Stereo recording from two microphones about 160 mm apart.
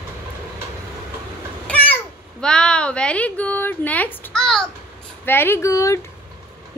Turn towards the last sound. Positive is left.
turn(degrees=20)  # may be behind; listen again after turning